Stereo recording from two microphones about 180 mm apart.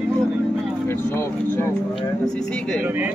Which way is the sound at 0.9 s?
10° left (ahead or behind).